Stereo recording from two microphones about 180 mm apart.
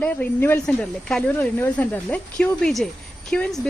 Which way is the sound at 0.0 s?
10° left (ahead or behind).